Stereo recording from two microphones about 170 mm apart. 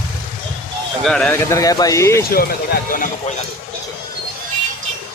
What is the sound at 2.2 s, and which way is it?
Speech, 60° left (ahead or behind).